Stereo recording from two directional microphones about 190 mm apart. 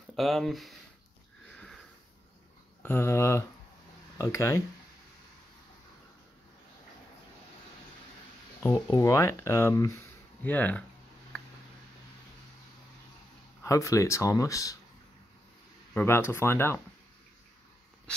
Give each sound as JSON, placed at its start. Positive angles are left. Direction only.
{"t": 0.1, "sound": "speech", "side_deg": 0}
{"t": 2.8, "sound": "speech", "side_deg": 10}
{"t": 8.6, "sound": "speech", "side_deg": 20}
{"t": 13.7, "sound": "speech", "side_deg": 15}
{"t": 15.9, "sound": "speech", "side_deg": 10}